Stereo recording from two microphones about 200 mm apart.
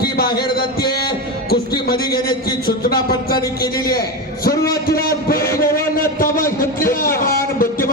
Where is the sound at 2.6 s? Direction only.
50° left (ahead or behind).